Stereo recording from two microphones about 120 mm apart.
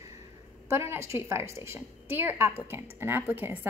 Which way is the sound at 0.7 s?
25° right (ahead or behind).